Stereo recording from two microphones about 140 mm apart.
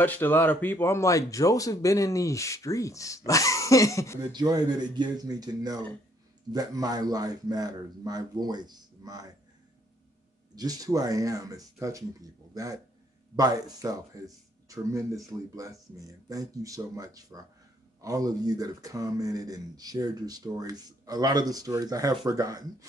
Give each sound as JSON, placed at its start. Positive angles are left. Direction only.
{"t": 0.0, "sound": "speech", "side_deg": 15}
{"t": 4.2, "sound": "speech", "side_deg": -30}
{"t": 10.5, "sound": "speech", "side_deg": -25}